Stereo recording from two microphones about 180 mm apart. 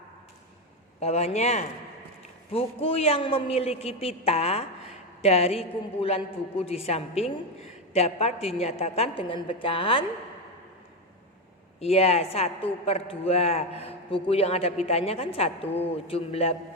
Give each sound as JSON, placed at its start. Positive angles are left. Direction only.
{"t": 0.9, "sound": "a man's voice", "side_deg": 35}
{"t": 11.8, "sound": "a man's voice", "side_deg": 35}